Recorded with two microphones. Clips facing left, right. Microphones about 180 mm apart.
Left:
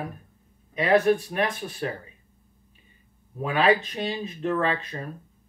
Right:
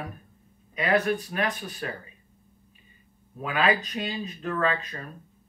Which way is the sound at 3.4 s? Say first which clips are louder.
Left 4 dB; 25° left (ahead or behind).